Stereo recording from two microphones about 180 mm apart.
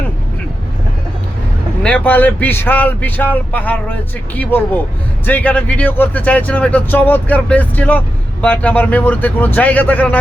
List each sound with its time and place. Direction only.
1.8 s speech: 10° left (ahead or behind)